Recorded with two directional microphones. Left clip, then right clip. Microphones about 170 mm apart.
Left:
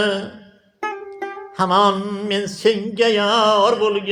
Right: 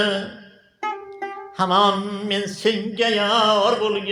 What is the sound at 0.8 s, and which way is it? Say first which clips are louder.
Music: left 1 dB; 40° left (ahead or behind).